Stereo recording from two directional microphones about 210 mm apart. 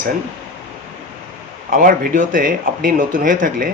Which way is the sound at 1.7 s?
40° right (ahead or behind).